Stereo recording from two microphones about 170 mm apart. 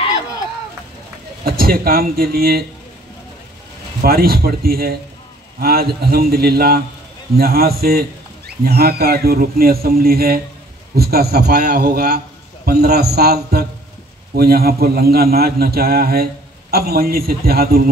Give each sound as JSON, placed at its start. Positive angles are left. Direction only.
{"t": 1.4, "sound": "a man's voice", "side_deg": -60}
{"t": 4.0, "sound": "a man's voice", "side_deg": -60}